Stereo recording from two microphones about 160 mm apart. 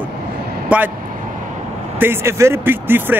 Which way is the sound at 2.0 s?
15° right (ahead or behind).